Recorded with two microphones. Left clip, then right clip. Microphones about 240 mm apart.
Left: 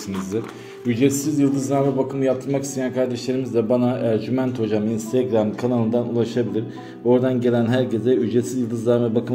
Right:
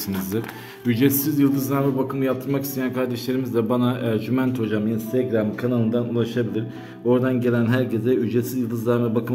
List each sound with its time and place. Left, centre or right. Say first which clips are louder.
0.8 s speech: left 1 dB; centre
5.3 s a man's voice: left 2 dB; centre
7.1 s a man's voice: left 2 dB; centre